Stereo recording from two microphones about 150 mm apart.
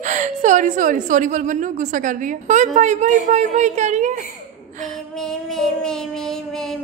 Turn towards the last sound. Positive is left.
turn(degrees=5)  # may be behind; listen again after turning